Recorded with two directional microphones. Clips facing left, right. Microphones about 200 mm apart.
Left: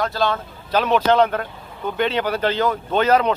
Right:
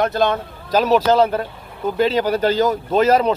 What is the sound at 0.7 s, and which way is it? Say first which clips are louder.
Speech: right 3 dB; 35° right (ahead or behind).